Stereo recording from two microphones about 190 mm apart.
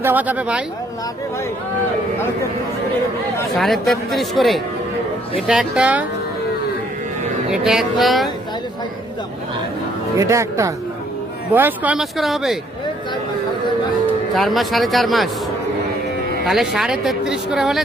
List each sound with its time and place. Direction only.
0.0 s speech: 10° right (ahead or behind)
3.6 s speech: centre (ahead or behind)
7.5 s speech: 5° right (ahead or behind)
10.2 s speech: 15° right (ahead or behind)
14.3 s speech: centre (ahead or behind)
16.5 s speech: centre (ahead or behind)